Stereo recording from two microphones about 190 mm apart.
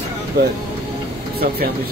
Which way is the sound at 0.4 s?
55° right (ahead or behind).